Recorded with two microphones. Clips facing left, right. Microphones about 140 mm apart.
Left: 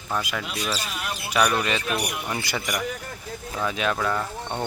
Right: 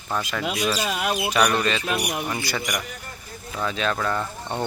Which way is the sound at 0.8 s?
65° right (ahead or behind).